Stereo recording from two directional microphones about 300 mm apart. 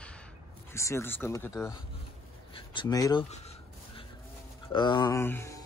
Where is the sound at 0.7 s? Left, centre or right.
Centre.